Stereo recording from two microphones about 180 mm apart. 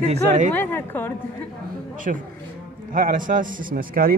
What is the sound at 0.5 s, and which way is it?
Speech, 10° left (ahead or behind).